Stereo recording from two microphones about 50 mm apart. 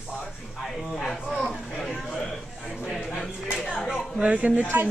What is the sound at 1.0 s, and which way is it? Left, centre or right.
Speech, centre.